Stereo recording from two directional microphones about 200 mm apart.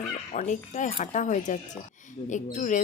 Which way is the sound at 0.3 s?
40° left (ahead or behind).